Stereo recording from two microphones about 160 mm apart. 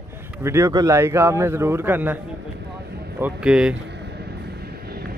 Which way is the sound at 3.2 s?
10° right (ahead or behind).